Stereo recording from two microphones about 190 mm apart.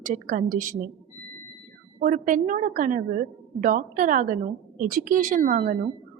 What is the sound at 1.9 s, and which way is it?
A woman's voice, 40° right (ahead or behind).